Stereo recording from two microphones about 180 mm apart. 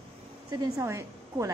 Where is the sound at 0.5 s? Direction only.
20° right (ahead or behind).